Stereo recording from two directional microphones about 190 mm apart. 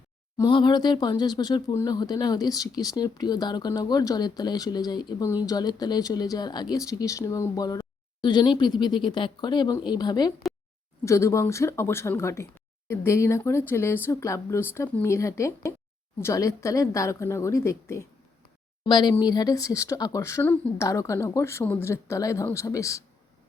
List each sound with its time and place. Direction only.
0.3 s speech: 25° left (ahead or behind)